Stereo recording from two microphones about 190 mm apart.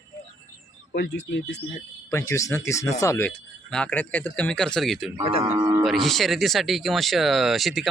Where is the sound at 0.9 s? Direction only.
65° left (ahead or behind).